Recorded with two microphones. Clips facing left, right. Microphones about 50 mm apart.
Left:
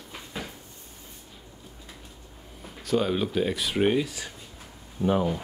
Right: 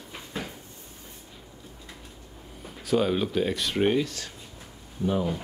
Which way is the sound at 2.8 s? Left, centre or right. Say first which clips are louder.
Right 1 dB; centre.